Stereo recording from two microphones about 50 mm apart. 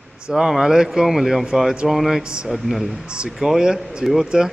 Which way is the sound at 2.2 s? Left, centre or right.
Centre.